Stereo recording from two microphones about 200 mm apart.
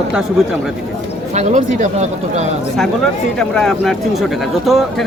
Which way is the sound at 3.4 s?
5° left (ahead or behind).